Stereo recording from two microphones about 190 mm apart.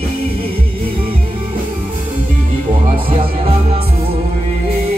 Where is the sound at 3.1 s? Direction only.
30° right (ahead or behind).